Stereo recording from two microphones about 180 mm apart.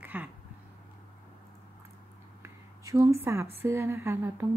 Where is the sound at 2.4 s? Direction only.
15° right (ahead or behind).